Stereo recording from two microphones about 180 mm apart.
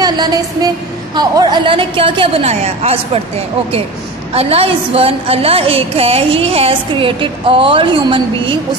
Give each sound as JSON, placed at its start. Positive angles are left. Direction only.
{"t": 0.0, "sound": "a woman's voice", "side_deg": -20}
{"t": 4.3, "sound": "a woman's voice", "side_deg": -35}